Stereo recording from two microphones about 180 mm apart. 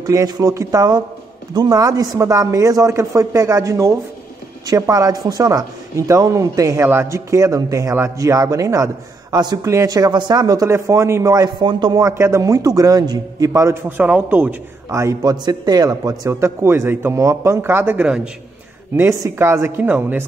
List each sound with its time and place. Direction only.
0.0 s speech: 20° right (ahead or behind)